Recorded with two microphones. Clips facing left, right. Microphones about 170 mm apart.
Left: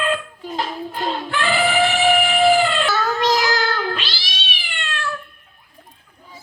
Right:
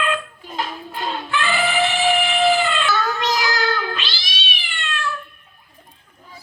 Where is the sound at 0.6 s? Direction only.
40° left (ahead or behind).